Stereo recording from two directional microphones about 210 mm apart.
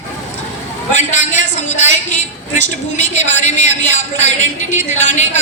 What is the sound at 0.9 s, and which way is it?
A woman's voice, 35° left (ahead or behind).